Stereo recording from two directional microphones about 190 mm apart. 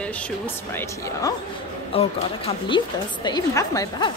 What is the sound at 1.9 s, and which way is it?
A woman's voice, 30° left (ahead or behind).